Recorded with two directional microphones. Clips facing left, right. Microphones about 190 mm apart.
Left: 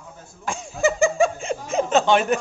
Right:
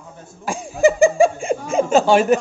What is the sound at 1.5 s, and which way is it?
Speech, 50° right (ahead or behind).